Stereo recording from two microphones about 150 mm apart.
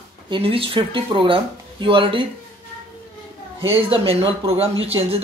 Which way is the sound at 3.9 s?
40° right (ahead or behind).